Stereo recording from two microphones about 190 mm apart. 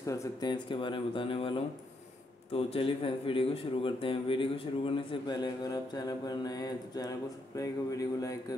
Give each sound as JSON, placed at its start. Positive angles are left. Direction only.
{"t": 0.0, "sound": "a man's voice", "side_deg": 15}